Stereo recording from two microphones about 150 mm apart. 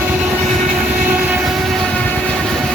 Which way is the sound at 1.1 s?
10° right (ahead or behind).